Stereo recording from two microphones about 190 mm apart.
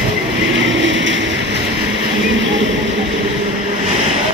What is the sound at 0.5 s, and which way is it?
Vehicle, 75° right (ahead or behind).